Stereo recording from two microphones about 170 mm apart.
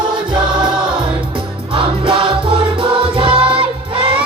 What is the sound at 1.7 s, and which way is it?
Music, 30° right (ahead or behind).